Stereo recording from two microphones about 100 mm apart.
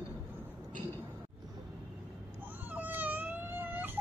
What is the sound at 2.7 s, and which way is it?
Baby cry, 15° right (ahead or behind).